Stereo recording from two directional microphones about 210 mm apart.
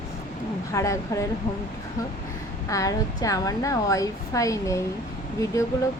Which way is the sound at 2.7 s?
15° left (ahead or behind).